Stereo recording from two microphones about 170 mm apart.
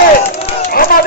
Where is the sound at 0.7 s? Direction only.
55° left (ahead or behind).